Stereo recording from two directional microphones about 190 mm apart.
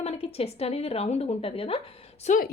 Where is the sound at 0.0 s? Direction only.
35° left (ahead or behind).